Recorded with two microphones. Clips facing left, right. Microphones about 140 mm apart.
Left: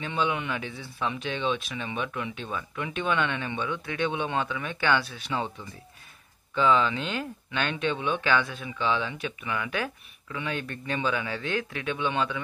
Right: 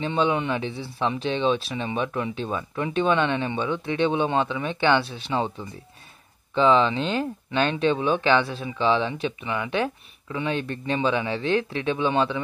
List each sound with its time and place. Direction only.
0.0 s speech: 30° right (ahead or behind)